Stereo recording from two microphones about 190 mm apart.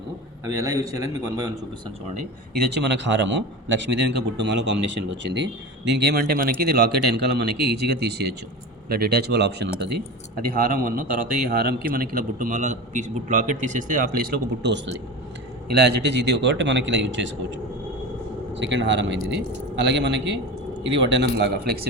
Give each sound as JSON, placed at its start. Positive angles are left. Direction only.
{"t": 0.4, "sound": "a man's voice", "side_deg": -15}
{"t": 2.6, "sound": "a man's voice", "side_deg": -65}
{"t": 10.5, "sound": "a man's voice", "side_deg": -45}
{"t": 11.4, "sound": "a man's voice", "side_deg": -55}
{"t": 18.5, "sound": "a man's voice", "side_deg": -75}